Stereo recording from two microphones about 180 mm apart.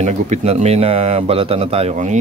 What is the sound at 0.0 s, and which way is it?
A man's voice, 40° right (ahead or behind).